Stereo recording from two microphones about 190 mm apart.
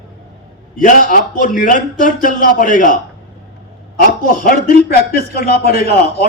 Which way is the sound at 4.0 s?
50° left (ahead or behind).